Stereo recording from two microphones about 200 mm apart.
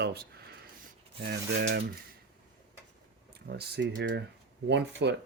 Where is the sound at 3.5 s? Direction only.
55° right (ahead or behind).